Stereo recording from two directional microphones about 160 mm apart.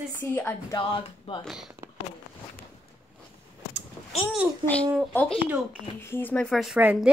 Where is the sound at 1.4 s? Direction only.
Centre (ahead or behind).